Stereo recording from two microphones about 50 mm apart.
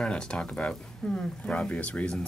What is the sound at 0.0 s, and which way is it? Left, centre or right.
Speech, centre.